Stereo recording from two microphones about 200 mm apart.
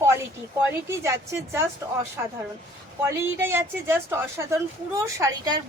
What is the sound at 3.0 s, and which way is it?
A woman's voice, 10° right (ahead or behind).